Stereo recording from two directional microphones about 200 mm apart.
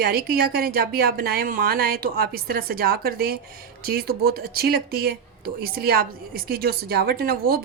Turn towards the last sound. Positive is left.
turn(degrees=-50)  # may be behind; listen again after turning